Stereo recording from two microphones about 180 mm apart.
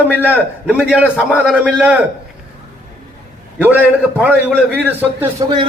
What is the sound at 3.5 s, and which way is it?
A man's voice, 10° right (ahead or behind).